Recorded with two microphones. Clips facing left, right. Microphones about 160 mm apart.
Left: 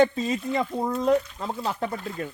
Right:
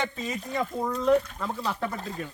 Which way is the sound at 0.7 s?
30° left (ahead or behind).